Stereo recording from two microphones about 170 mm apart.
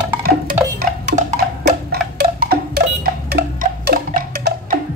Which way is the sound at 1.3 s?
65° right (ahead or behind).